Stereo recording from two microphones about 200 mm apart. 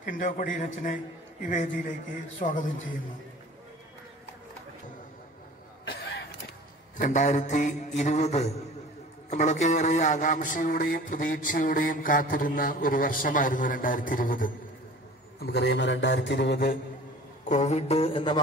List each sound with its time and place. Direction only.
0.0 s a man's voice: 40° left (ahead or behind)
5.9 s a sound: 55° left (ahead or behind)
7.0 s a man's voice: 40° left (ahead or behind)
9.3 s a sound: 35° left (ahead or behind)
15.3 s a man's voice: 55° left (ahead or behind)
17.5 s a man's voice: 35° left (ahead or behind)